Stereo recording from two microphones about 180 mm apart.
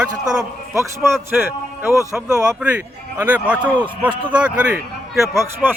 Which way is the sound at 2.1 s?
5° right (ahead or behind).